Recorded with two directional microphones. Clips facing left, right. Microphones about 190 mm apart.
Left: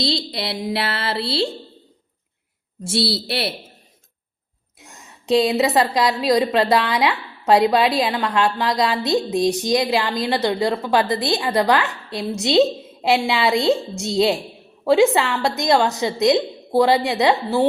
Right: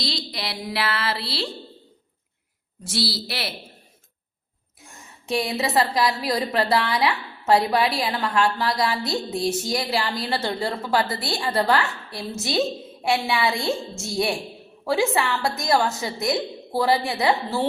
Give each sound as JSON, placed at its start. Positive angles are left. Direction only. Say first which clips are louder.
{"t": 0.0, "sound": "a woman's voice", "louder": "left 7 dB", "side_deg": 25}
{"t": 2.8, "sound": "a woman's voice", "louder": "left 5 dB", "side_deg": 25}
{"t": 4.8, "sound": "a woman's voice", "louder": "left 2 dB", "side_deg": 20}